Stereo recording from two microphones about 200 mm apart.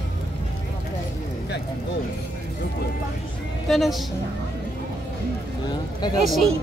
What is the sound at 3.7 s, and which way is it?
Speech, centre (ahead or behind).